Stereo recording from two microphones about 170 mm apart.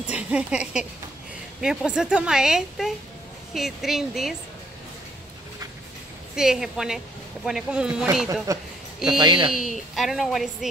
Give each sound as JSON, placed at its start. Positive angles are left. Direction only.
{"t": 0.1, "sound": "speech", "side_deg": -5}
{"t": 6.3, "sound": "speech", "side_deg": -5}
{"t": 8.5, "sound": "speech", "side_deg": -20}
{"t": 9.5, "sound": "speech", "side_deg": 0}